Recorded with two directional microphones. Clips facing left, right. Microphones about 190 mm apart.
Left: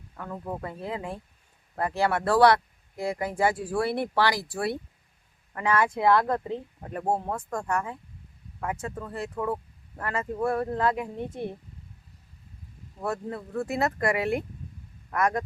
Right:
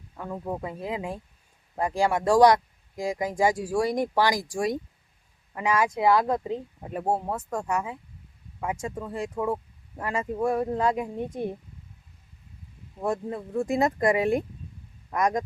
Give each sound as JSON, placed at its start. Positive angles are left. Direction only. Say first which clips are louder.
{"t": 0.2, "sound": "speech", "louder": "right 2 dB", "side_deg": -15}
{"t": 13.0, "sound": "speech", "louder": "right 3 dB", "side_deg": -15}